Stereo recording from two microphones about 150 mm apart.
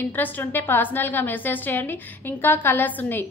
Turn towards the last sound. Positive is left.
turn(degrees=15)  # may be behind; listen again after turning